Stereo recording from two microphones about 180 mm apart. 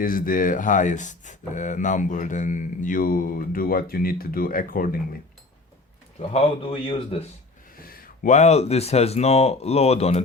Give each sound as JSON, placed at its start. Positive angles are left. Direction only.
{"t": 0.0, "sound": "speech", "side_deg": 50}
{"t": 6.1, "sound": "speech", "side_deg": 30}
{"t": 7.8, "sound": "speech", "side_deg": 50}